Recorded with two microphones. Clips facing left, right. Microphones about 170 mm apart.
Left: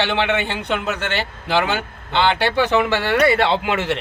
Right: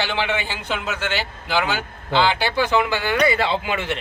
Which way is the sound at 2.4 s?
65° left (ahead or behind).